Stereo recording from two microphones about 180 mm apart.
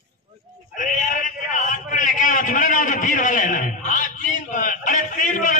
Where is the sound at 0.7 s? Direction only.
45° left (ahead or behind).